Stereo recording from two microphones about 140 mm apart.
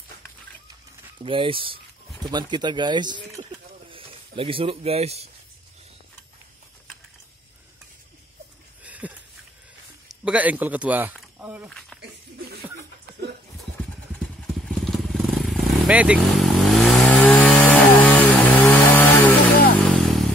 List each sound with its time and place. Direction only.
1.2 s speech: 40° right (ahead or behind)
8.8 s a sound: 10° right (ahead or behind)
10.2 s speech: 10° right (ahead or behind)
11.9 s a sound: 5° left (ahead or behind)
14.7 s vehicle: centre (ahead or behind)
16.4 s chainsaw: centre (ahead or behind)
19.8 s vehicle: centre (ahead or behind)